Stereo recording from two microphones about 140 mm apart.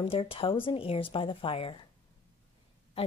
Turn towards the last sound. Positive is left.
turn(degrees=45)  # may be behind; listen again after turning